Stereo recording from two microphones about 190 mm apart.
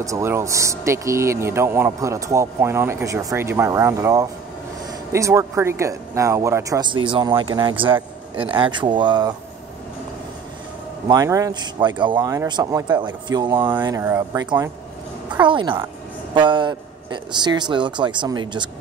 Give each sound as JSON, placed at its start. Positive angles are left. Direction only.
{"t": 0.0, "sound": "speech", "side_deg": -15}
{"t": 11.1, "sound": "speech", "side_deg": -20}